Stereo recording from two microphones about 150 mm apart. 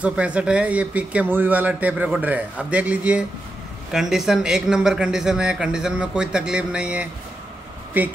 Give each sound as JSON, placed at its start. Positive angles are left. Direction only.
{"t": 0.0, "sound": "a man's voice", "side_deg": -10}